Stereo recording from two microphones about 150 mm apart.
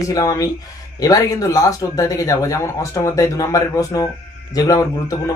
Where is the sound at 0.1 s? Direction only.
25° left (ahead or behind).